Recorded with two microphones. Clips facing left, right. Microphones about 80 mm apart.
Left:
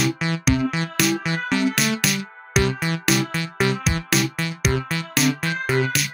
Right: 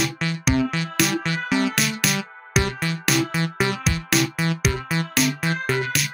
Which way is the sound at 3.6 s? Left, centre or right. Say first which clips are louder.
Left 3 dB; right.